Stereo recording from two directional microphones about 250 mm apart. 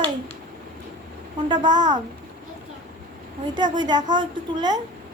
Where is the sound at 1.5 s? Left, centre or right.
Centre.